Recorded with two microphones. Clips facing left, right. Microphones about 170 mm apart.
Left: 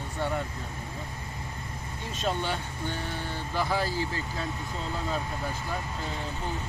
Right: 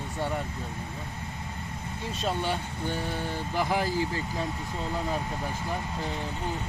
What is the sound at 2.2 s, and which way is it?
Speech, 10° right (ahead or behind).